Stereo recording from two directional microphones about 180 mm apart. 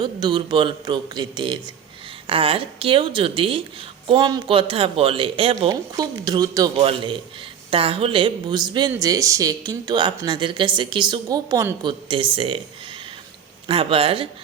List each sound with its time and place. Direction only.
0.0 s speech: 25° right (ahead or behind)
13.7 s speech: 30° right (ahead or behind)